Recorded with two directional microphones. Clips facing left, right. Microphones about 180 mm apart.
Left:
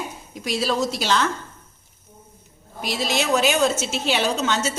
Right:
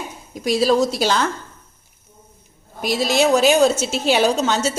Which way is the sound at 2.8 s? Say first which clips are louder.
Right 7 dB; 40° right (ahead or behind).